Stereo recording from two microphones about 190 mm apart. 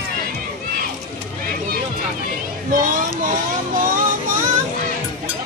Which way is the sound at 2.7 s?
45° right (ahead or behind).